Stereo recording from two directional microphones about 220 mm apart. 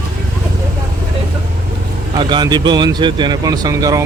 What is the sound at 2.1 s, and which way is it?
Speech, 20° right (ahead or behind).